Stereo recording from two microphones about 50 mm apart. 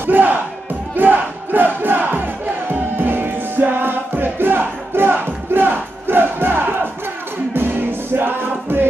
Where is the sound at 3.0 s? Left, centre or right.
Right.